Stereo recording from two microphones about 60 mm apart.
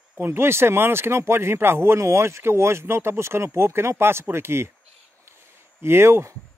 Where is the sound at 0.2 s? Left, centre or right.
Right.